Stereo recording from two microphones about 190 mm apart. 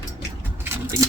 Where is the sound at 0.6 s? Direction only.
10° right (ahead or behind).